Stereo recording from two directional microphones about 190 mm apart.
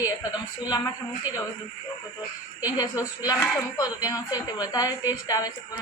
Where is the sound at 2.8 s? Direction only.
20° left (ahead or behind).